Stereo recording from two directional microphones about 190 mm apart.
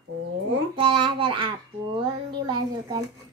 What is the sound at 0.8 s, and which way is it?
A child's voice, 25° right (ahead or behind).